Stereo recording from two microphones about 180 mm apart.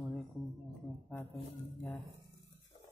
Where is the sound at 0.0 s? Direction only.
Centre (ahead or behind).